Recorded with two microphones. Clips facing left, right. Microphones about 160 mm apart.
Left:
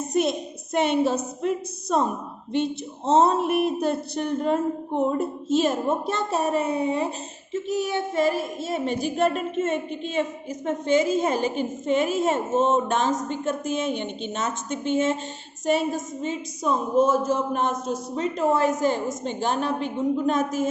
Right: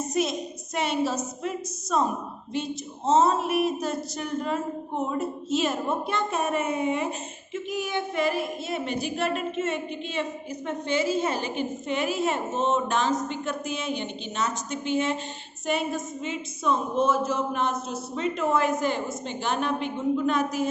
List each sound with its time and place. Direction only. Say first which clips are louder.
0.1 s a woman's voice: left 6 dB; 55° left (ahead or behind)
3.1 s a woman's voice: left 2 dB; 60° left (ahead or behind)
5.5 s a man's voice: left 5 dB; 45° left (ahead or behind)